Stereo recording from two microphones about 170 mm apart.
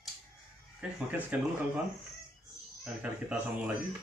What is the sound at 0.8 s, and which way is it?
Speech, 10° right (ahead or behind).